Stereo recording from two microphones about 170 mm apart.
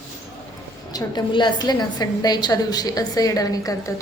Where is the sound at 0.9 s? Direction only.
25° left (ahead or behind).